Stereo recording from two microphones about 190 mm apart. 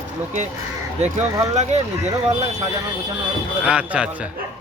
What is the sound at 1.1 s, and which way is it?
Speech, 35° right (ahead or behind).